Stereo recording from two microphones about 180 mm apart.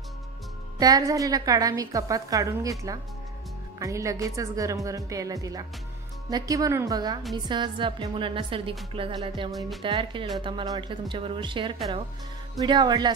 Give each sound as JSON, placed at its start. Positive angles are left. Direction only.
{"t": 0.7, "sound": "a woman's voice", "side_deg": -20}
{"t": 3.8, "sound": "a woman's voice", "side_deg": -15}
{"t": 8.9, "sound": "music", "side_deg": -30}
{"t": 9.5, "sound": "speech", "side_deg": 0}
{"t": 9.8, "sound": "a woman's voice", "side_deg": -30}